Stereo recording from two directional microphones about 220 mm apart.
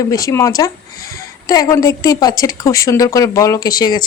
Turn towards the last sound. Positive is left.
turn(degrees=15)  # may be behind; listen again after turning